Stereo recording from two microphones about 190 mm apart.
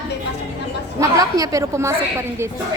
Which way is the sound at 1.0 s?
20° right (ahead or behind).